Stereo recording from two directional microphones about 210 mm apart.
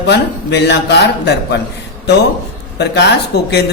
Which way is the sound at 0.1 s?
55° left (ahead or behind).